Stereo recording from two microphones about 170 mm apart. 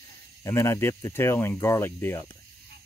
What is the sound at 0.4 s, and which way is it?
Speech, 15° left (ahead or behind).